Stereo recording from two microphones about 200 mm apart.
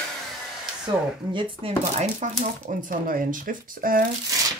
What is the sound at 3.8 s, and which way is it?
Speech, 45° right (ahead or behind).